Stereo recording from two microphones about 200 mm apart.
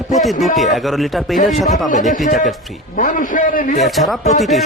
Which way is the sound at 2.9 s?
40° left (ahead or behind).